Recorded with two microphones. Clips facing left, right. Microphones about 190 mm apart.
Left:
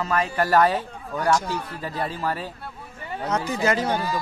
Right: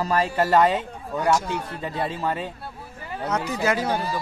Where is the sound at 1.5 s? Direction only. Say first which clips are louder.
Right 1 dB; 20° right (ahead or behind).